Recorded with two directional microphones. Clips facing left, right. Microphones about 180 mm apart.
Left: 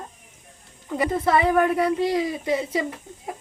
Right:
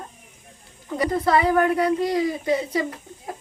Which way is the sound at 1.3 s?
25° left (ahead or behind).